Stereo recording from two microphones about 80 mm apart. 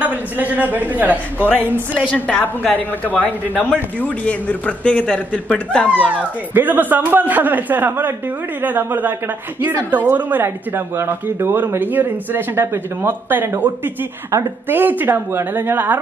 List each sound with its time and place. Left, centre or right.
0.0 s a sound: right
1.1 s a woman's voice: left
5.9 s speech: centre